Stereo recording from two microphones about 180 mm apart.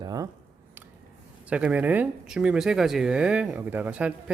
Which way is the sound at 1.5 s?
5° right (ahead or behind).